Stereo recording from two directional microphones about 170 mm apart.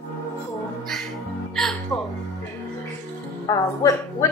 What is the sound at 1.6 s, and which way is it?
Music, centre (ahead or behind).